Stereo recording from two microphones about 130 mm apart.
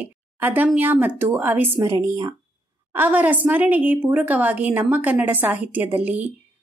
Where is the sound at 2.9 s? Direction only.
15° right (ahead or behind).